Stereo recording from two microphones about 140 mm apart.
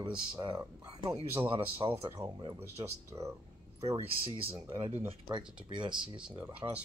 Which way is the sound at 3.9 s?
40° right (ahead or behind).